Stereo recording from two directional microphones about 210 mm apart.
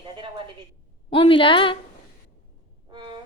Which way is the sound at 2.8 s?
20° right (ahead or behind).